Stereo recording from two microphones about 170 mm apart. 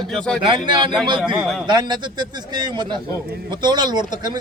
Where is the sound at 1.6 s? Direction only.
25° right (ahead or behind).